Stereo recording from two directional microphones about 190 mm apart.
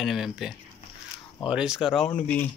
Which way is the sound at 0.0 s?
Centre (ahead or behind).